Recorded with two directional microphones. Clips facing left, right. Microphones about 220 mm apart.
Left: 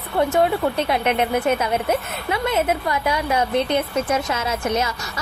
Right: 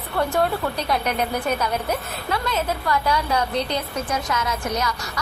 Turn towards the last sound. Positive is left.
turn(degrees=25)  # may be behind; listen again after turning